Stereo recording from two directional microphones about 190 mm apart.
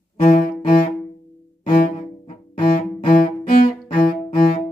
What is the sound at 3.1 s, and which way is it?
Cello, 45° left (ahead or behind).